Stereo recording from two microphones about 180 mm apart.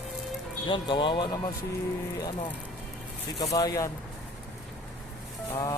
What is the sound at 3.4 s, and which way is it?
Speech, 20° left (ahead or behind).